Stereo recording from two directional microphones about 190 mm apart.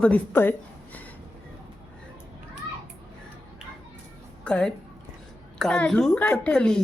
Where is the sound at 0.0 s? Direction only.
10° left (ahead or behind).